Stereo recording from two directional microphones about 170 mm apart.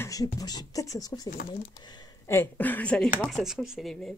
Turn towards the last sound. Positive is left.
turn(degrees=0)  # may be behind; listen again after turning